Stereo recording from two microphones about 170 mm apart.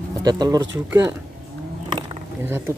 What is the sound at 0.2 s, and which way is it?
Speech, 25° right (ahead or behind).